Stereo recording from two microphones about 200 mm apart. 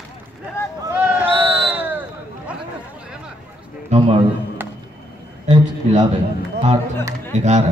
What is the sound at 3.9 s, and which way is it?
Speech, 30° right (ahead or behind).